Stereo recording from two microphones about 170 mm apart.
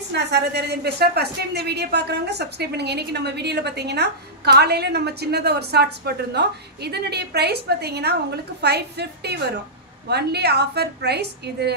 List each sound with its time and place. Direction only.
0.1 s a woman's voice: 85° right